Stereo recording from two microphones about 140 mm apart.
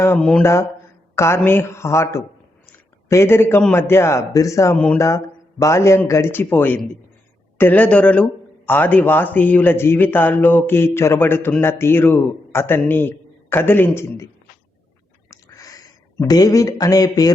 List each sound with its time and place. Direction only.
0.2 s speech: 5° left (ahead or behind)
1.1 s a man's voice: 20° left (ahead or behind)
15.3 s a sound: 25° left (ahead or behind)
16.2 s a man's voice: 25° left (ahead or behind)